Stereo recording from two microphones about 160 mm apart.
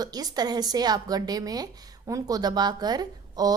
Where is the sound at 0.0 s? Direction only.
25° right (ahead or behind).